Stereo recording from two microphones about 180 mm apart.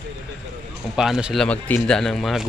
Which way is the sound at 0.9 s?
5° right (ahead or behind).